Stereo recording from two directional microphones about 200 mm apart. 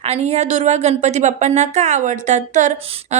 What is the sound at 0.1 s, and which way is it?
A woman's voice, 30° right (ahead or behind).